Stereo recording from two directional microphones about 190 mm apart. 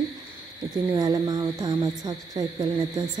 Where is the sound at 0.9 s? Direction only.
20° right (ahead or behind).